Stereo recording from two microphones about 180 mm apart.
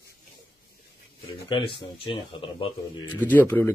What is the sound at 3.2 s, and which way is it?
Speech, 10° left (ahead or behind).